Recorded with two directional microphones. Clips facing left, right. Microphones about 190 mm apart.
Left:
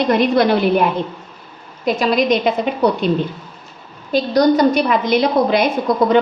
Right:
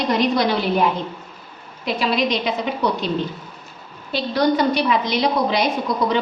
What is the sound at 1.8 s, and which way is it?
Speech, 45° left (ahead or behind).